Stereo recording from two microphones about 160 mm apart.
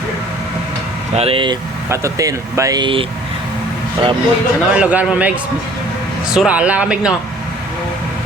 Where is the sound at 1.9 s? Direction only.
20° right (ahead or behind).